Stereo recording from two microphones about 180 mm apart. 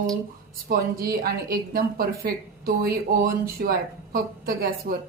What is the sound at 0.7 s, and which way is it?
A woman's voice, 60° right (ahead or behind).